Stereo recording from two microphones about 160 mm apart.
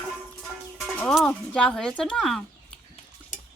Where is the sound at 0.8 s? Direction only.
5° left (ahead or behind).